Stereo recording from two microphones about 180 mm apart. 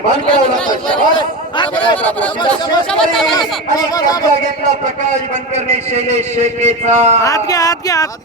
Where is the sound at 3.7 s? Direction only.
20° left (ahead or behind).